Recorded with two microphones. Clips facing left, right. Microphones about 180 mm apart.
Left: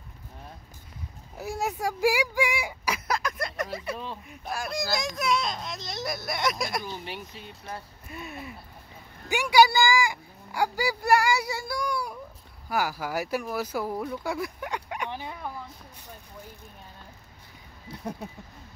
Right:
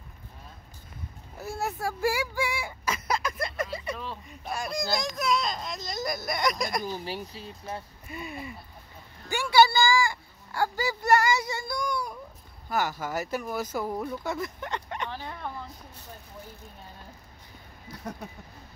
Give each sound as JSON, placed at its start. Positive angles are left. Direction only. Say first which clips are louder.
{"t": 1.4, "sound": "a sound", "louder": "left 2 dB", "side_deg": 15}
{"t": 3.1, "sound": "a sound", "louder": "right 1 dB", "side_deg": 0}
{"t": 4.0, "sound": "speech", "louder": "left 1 dB", "side_deg": 15}
{"t": 4.5, "sound": "speech", "louder": "even", "side_deg": 0}
{"t": 6.8, "sound": "speech", "louder": "right 3 dB", "side_deg": -40}
{"t": 8.1, "sound": "speech", "louder": "right 1 dB", "side_deg": 0}
{"t": 9.3, "sound": "speech", "louder": "left 1 dB", "side_deg": 15}